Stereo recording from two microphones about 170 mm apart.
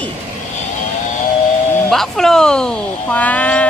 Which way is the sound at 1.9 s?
Centre (ahead or behind).